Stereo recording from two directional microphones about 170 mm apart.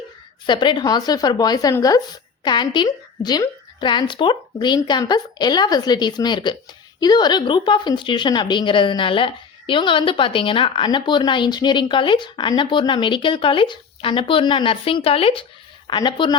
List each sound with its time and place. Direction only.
0.4 s a woman's voice: 25° left (ahead or behind)